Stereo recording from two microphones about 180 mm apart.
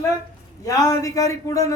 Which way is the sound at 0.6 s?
20° left (ahead or behind).